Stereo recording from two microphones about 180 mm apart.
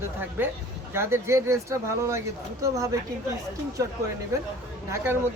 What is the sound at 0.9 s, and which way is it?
Speech, 15° right (ahead or behind).